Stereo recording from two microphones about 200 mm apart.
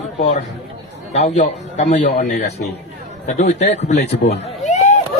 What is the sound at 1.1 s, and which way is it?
A man's voice, 30° left (ahead or behind).